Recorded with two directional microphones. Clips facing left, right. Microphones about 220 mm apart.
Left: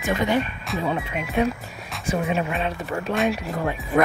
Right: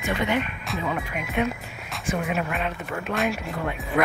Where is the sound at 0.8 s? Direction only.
30° left (ahead or behind).